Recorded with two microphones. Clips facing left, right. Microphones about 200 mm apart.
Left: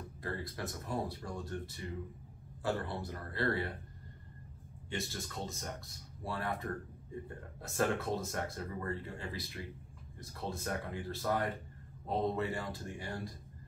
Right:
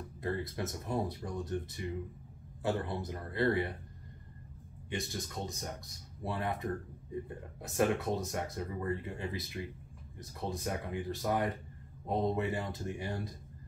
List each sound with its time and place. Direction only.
0.2 s speech: 20° right (ahead or behind)
4.9 s speech: 15° right (ahead or behind)